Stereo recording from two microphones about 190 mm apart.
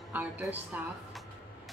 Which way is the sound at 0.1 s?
10° right (ahead or behind).